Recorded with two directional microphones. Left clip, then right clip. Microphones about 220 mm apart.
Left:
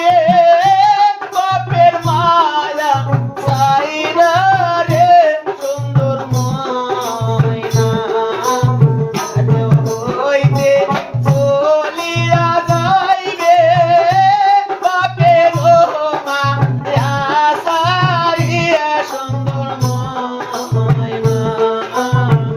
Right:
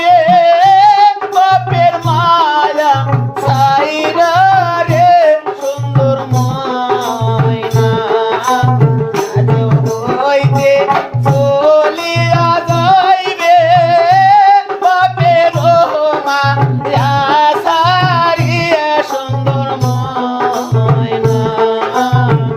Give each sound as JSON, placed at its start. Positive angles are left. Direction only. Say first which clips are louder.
{"t": 0.0, "sound": "music", "louder": "right 2 dB", "side_deg": -40}
{"t": 7.8, "sound": "music", "louder": "right 3 dB", "side_deg": -40}
{"t": 10.2, "sound": "music", "louder": "right 2 dB", "side_deg": -40}